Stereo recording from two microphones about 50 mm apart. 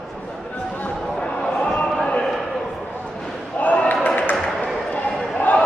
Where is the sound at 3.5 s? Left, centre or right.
Left.